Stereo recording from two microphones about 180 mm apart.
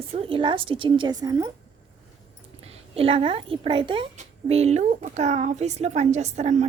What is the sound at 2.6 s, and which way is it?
A woman's voice, 35° right (ahead or behind).